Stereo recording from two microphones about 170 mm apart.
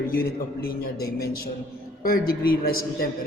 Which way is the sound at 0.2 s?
65° left (ahead or behind).